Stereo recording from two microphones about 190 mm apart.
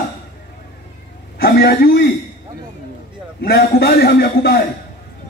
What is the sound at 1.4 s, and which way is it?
Speech, 55° left (ahead or behind).